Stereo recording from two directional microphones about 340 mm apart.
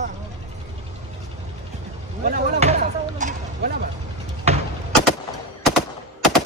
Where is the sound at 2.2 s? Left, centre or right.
Right.